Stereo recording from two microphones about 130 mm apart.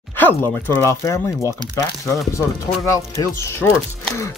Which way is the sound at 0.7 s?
20° left (ahead or behind).